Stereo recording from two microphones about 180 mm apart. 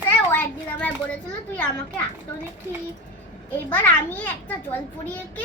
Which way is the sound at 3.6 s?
10° left (ahead or behind).